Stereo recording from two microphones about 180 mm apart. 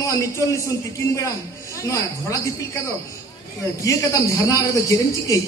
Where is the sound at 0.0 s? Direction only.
15° left (ahead or behind).